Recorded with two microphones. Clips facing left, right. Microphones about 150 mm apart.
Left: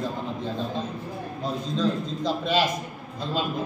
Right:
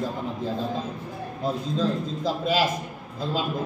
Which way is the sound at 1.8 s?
5° right (ahead or behind).